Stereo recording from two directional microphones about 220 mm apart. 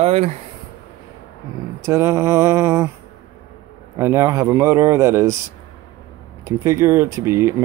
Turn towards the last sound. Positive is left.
turn(degrees=-10)  # may be behind; listen again after turning